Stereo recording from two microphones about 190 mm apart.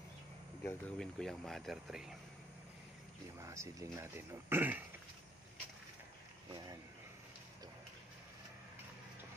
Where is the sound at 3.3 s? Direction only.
15° right (ahead or behind).